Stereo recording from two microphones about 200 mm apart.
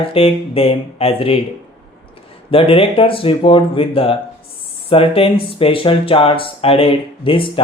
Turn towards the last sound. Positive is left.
turn(degrees=25)  # may be behind; listen again after turning